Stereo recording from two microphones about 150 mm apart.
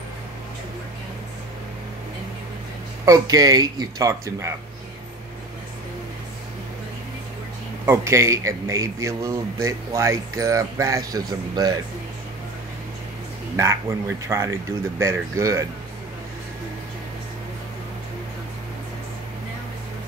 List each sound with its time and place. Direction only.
3.1 s speech: 25° right (ahead or behind)
7.8 s speech: 20° right (ahead or behind)
13.6 s speech: 20° right (ahead or behind)